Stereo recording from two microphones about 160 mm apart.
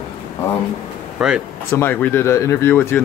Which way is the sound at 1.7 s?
15° left (ahead or behind).